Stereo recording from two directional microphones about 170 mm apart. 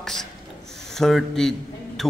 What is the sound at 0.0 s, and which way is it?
Rub, 5° left (ahead or behind).